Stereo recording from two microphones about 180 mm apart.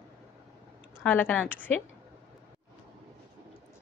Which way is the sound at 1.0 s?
10° left (ahead or behind).